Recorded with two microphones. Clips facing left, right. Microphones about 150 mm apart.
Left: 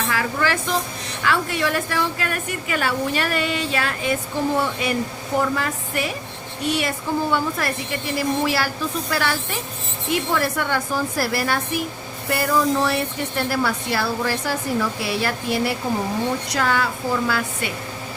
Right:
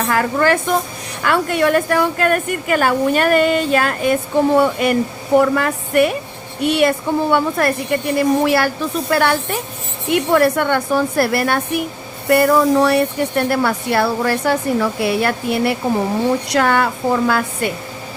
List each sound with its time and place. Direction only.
0.1 s a woman's voice: 50° right (ahead or behind)